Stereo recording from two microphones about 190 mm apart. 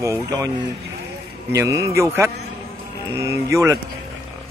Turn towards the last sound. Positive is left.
turn(degrees=-15)  # may be behind; listen again after turning